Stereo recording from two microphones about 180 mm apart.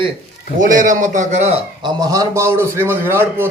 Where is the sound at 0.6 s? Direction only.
45° right (ahead or behind).